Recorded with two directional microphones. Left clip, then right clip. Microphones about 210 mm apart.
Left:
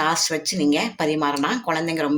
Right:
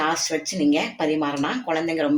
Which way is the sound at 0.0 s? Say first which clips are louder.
Left 2 dB; 55° left (ahead or behind).